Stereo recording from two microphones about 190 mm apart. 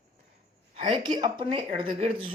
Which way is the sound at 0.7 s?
35° right (ahead or behind).